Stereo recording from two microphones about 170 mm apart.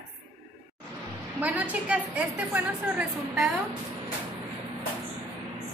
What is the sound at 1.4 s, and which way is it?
A woman's voice, 10° right (ahead or behind).